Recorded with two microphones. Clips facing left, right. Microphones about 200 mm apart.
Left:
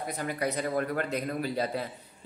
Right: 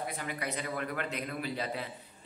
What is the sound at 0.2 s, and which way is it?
A man's voice, 40° left (ahead or behind).